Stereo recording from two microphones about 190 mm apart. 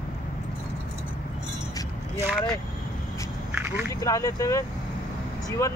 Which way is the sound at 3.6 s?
10° right (ahead or behind).